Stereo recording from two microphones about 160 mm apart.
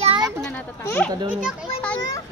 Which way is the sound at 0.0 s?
30° right (ahead or behind).